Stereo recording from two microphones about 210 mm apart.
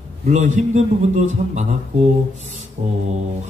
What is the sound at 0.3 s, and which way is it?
A man's voice, 35° right (ahead or behind).